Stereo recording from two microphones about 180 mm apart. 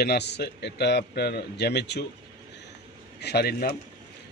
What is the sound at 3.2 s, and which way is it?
Speech, 65° left (ahead or behind).